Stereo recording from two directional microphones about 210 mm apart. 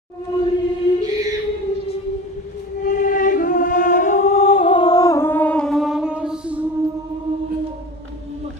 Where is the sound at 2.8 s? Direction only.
40° left (ahead or behind); by 6.6 s 5° right (ahead or behind).